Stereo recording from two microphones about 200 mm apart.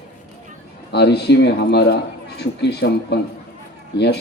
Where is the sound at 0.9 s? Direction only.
55° left (ahead or behind).